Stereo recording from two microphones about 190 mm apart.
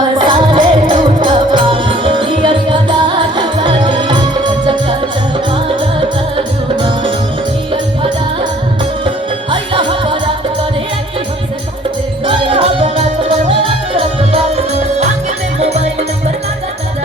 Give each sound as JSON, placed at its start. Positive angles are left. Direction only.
{"t": 0.2, "sound": "music", "side_deg": -25}
{"t": 9.0, "sound": "music", "side_deg": -25}
{"t": 12.2, "sound": "music", "side_deg": -25}